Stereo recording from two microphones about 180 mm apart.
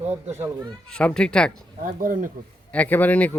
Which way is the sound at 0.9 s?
5° left (ahead or behind).